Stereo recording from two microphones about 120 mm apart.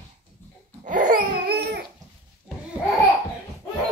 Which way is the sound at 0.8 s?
90° right.